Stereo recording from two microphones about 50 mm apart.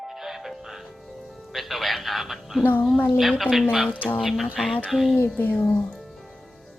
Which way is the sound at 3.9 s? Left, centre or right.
Left.